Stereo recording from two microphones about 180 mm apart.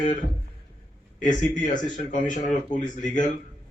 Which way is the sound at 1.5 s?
45° left (ahead or behind).